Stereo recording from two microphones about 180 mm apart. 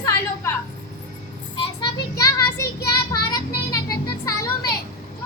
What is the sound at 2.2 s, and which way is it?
Child singing, 15° left (ahead or behind).